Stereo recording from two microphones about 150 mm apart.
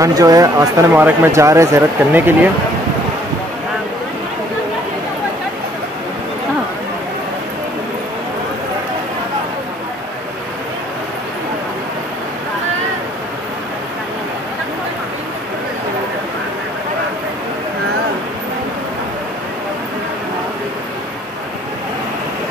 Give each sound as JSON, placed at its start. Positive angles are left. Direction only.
{"t": 0.0, "sound": "speech", "side_deg": -25}